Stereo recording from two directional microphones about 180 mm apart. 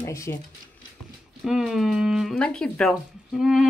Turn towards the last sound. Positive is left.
turn(degrees=0)  # may be behind; listen again after turning